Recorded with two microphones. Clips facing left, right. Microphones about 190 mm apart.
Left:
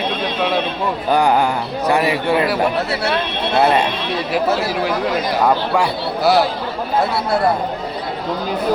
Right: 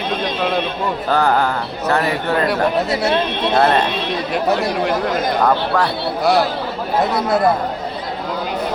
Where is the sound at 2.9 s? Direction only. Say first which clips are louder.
Right 2 dB; 15° right (ahead or behind).